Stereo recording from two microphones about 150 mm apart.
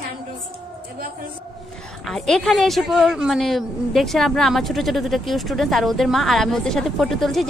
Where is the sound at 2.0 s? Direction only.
5° left (ahead or behind).